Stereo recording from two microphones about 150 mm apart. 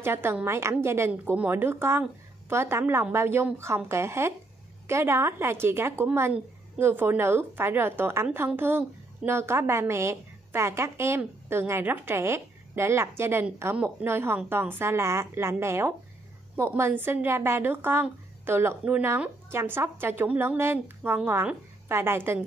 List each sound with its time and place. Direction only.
0.0 s a woman's voice: 15° right (ahead or behind)